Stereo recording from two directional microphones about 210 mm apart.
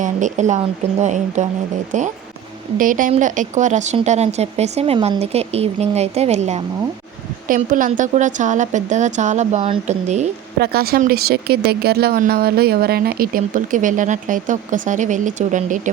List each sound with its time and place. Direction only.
0.0 s speech: 35° right (ahead or behind)
2.7 s speech: 40° right (ahead or behind)
10.6 s speech: 45° right (ahead or behind)